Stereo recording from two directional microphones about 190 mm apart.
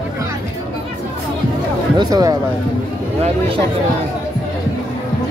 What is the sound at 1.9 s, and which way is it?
Speech, 20° right (ahead or behind).